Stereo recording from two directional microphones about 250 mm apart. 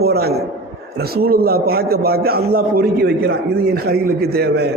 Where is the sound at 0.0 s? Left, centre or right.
Right.